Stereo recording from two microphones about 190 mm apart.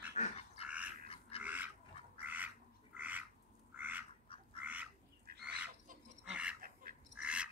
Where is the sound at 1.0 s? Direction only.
30° left (ahead or behind).